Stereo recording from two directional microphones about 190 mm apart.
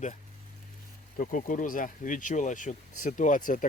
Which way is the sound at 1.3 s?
45° left (ahead or behind).